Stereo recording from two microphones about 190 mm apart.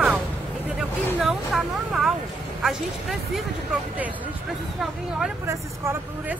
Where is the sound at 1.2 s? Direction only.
Centre (ahead or behind).